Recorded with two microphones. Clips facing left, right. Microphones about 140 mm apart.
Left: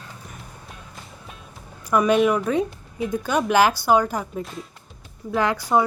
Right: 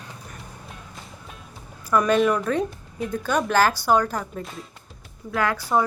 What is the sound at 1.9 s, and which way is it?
Speech, 10° left (ahead or behind).